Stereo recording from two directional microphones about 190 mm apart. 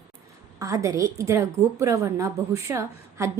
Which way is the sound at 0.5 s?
15° right (ahead or behind).